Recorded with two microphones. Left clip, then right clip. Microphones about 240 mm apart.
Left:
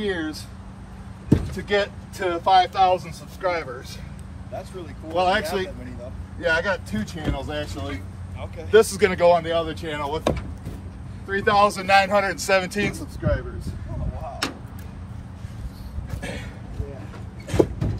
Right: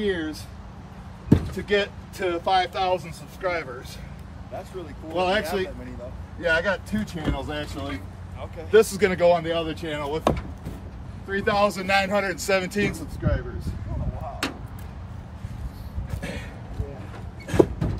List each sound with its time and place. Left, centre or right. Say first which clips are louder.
0.0 s speech: even; centre
1.5 s speech: left 1 dB; centre
5.1 s speech: left 2 dB; centre
6.4 s speech: left 1 dB; centre
10.3 s speech: right 2 dB; centre
11.2 s speech: left 4 dB; centre
16.1 s a sound: left 1 dB; centre
17.5 s a sound: right 1 dB; centre